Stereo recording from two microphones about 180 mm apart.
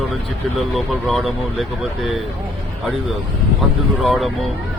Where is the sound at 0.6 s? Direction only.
Centre (ahead or behind).